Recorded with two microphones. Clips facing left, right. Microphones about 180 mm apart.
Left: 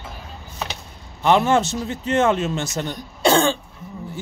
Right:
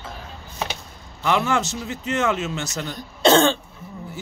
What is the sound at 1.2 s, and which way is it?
A man's voice, 30° left (ahead or behind).